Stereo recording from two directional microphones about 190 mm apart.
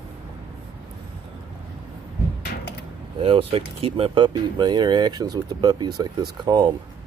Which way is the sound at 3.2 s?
30° right (ahead or behind).